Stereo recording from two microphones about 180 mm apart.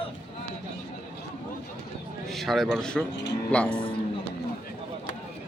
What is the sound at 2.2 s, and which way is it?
A man's voice, centre (ahead or behind).